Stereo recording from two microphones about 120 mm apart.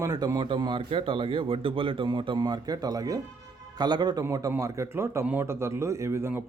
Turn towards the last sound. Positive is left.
turn(degrees=-20)  # may be behind; listen again after turning